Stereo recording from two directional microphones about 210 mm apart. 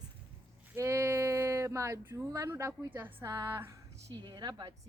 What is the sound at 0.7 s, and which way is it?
Speech, 15° right (ahead or behind).